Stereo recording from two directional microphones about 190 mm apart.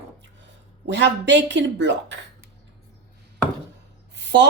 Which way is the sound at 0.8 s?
65° right (ahead or behind).